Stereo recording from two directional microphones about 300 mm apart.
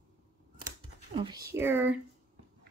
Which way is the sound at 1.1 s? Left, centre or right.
Centre.